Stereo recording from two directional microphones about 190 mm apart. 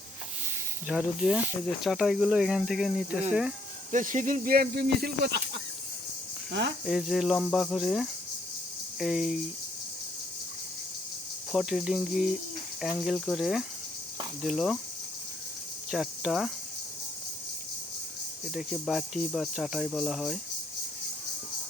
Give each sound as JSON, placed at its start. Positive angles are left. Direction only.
{"t": 0.9, "sound": "speech", "side_deg": -5}
{"t": 3.9, "sound": "speech", "side_deg": -40}
{"t": 6.5, "sound": "speech", "side_deg": -70}
{"t": 6.8, "sound": "speech", "side_deg": 0}
{"t": 11.5, "sound": "speech", "side_deg": 0}
{"t": 15.9, "sound": "speech", "side_deg": -5}
{"t": 18.5, "sound": "speech", "side_deg": 0}